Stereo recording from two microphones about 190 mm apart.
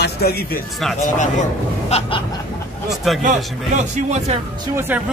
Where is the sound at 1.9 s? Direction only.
25° left (ahead or behind).